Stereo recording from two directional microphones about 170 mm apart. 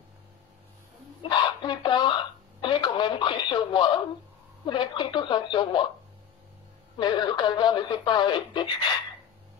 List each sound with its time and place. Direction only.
1.3 s speech: 25° left (ahead or behind)
7.0 s speech: 25° left (ahead or behind)